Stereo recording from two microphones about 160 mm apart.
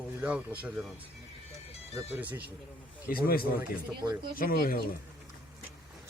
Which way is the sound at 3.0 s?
65° left (ahead or behind).